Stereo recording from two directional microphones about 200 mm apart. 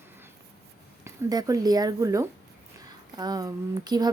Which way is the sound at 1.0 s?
20° right (ahead or behind).